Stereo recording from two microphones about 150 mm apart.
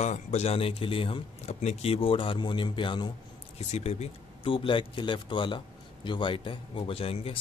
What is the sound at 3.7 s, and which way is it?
A man's voice, 45° left (ahead or behind).